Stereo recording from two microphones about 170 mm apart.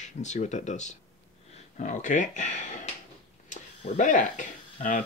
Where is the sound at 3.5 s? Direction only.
50° left (ahead or behind).